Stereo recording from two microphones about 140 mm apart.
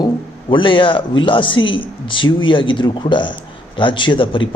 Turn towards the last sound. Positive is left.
turn(degrees=35)  # may be behind; listen again after turning